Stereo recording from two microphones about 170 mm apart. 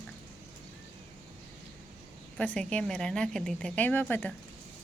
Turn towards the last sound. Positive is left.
turn(degrees=10)  # may be behind; listen again after turning